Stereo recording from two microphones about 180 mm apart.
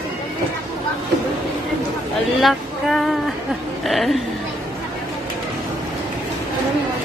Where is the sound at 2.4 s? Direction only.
Centre (ahead or behind).